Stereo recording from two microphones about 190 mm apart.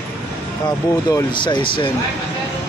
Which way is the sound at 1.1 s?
20° left (ahead or behind).